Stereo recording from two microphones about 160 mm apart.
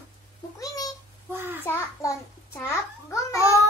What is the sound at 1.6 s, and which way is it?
A child's voice, 15° left (ahead or behind).